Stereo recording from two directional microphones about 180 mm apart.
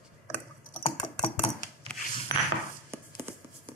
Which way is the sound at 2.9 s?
15° right (ahead or behind).